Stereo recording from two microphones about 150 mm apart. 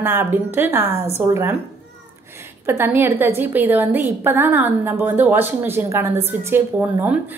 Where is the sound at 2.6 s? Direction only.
15° right (ahead or behind).